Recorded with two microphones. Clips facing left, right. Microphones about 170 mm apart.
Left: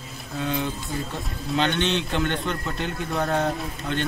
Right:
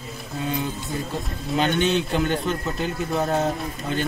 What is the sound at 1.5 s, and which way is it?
Speech, 10° right (ahead or behind).